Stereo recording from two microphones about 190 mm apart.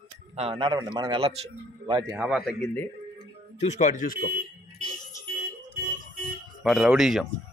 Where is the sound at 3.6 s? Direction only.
40° left (ahead or behind).